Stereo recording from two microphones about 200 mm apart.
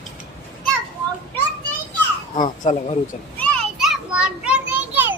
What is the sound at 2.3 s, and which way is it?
Speech, 40° left (ahead or behind).